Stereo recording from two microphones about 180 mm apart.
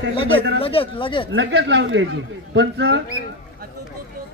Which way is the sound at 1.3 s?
75° right (ahead or behind).